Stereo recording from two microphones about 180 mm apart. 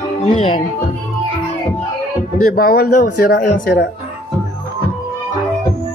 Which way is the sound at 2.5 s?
55° left (ahead or behind).